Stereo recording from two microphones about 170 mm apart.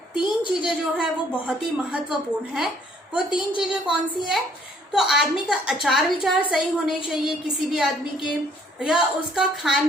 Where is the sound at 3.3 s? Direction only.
30° left (ahead or behind).